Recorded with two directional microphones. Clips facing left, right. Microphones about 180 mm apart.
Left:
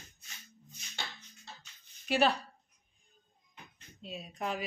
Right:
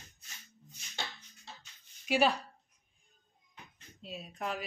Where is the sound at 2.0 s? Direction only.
10° right (ahead or behind).